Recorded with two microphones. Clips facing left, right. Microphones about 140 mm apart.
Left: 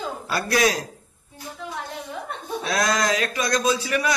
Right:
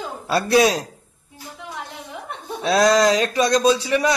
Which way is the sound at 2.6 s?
30° right (ahead or behind).